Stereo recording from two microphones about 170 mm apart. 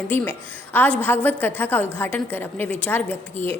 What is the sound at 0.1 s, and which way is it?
A woman's voice, 10° left (ahead or behind).